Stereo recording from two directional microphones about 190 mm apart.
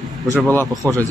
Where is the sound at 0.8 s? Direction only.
15° right (ahead or behind).